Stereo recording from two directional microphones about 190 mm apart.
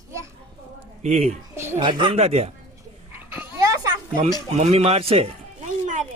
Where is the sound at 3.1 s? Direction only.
10° right (ahead or behind).